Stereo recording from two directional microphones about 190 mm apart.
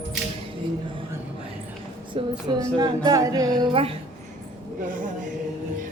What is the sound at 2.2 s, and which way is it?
Speech, 20° right (ahead or behind).